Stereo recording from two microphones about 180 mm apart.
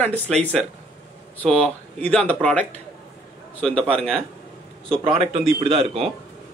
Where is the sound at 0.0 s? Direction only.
10° left (ahead or behind).